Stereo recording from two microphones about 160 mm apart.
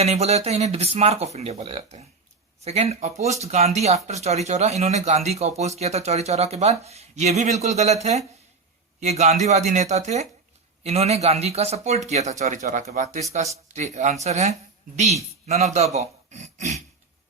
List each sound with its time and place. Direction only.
0.0 s speech: 40° right (ahead or behind)
9.0 s a man's voice: 45° right (ahead or behind)